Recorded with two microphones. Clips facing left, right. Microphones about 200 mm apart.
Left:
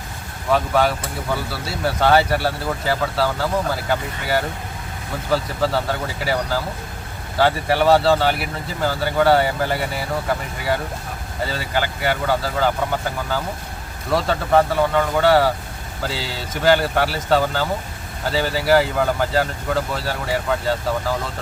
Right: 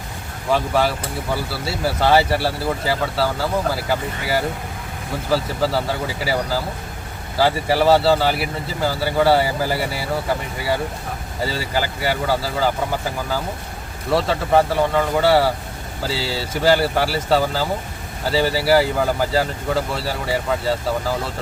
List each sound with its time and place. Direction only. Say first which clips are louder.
0.5 s speech: left 1 dB; centre (ahead or behind)
12.0 s speech: left 1 dB; 5° right (ahead or behind)
14.1 s speech: right 1 dB; centre (ahead or behind)
16.0 s speech: right 3 dB; 35° right (ahead or behind)
16.4 s speech: even; 5° right (ahead or behind)